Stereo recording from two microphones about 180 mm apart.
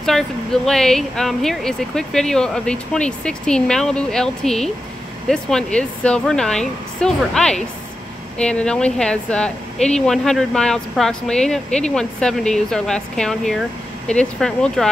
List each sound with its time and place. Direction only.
0.0 s speech: centre (ahead or behind)